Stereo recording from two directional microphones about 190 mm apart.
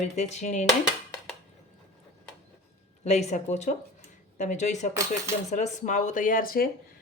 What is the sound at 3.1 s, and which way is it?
Speech, 35° left (ahead or behind).